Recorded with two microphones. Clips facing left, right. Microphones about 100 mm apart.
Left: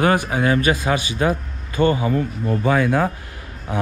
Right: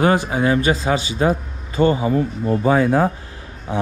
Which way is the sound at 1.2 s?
30° right (ahead or behind).